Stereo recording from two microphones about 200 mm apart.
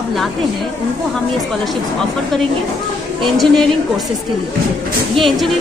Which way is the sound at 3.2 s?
Centre (ahead or behind).